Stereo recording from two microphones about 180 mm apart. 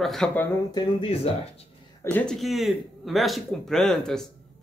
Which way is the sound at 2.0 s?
5° left (ahead or behind).